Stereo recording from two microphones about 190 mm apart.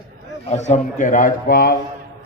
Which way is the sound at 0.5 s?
35° left (ahead or behind).